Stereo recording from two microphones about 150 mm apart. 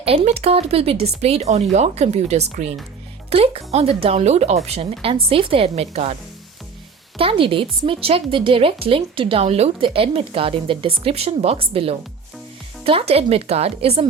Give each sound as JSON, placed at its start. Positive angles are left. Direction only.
{"t": 0.0, "sound": "a woman's voice", "side_deg": -40}
{"t": 7.2, "sound": "a woman's voice", "side_deg": -35}